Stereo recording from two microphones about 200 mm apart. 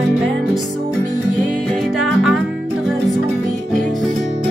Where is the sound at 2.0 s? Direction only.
5° right (ahead or behind).